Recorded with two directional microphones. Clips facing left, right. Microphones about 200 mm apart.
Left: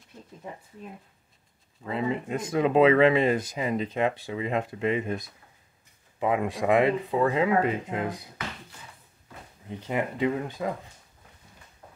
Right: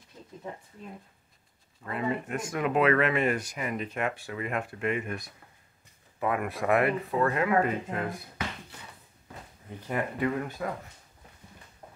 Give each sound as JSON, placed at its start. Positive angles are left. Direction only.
{"t": 1.9, "sound": "speech", "side_deg": 25}
{"t": 6.1, "sound": "speech", "side_deg": 15}
{"t": 9.7, "sound": "speech", "side_deg": 20}